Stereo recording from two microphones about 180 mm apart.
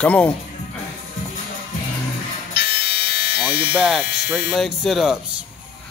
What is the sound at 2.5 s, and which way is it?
Electric shaver, 60° left (ahead or behind).